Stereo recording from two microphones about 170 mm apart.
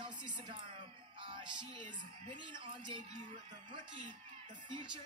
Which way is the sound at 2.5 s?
30° right (ahead or behind).